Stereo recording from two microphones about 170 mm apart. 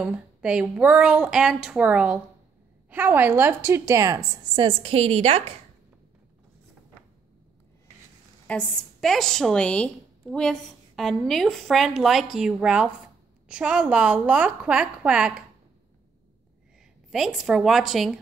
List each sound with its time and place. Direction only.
0.0 s a woman's voice: 5° right (ahead or behind); by 5.4 s 35° right (ahead or behind)
8.5 s a woman's voice: 5° left (ahead or behind)
17.1 s a woman's voice: centre (ahead or behind)